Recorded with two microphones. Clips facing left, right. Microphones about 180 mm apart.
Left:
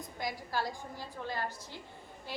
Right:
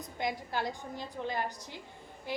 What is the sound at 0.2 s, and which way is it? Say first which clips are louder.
A woman's voice: right 2 dB; 20° right (ahead or behind).